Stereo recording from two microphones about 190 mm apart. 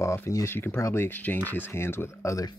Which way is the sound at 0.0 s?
15° left (ahead or behind).